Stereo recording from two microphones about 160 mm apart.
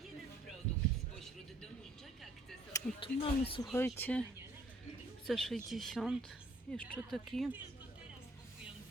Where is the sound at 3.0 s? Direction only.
35° left (ahead or behind).